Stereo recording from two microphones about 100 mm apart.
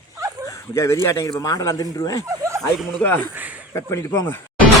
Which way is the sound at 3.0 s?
20° left (ahead or behind).